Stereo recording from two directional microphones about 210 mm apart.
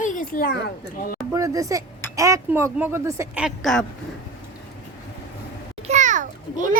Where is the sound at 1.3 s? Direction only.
15° right (ahead or behind); by 3.8 s centre (ahead or behind).